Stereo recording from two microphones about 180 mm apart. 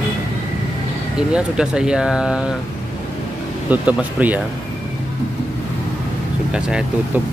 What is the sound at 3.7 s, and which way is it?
Speech, 10° right (ahead or behind).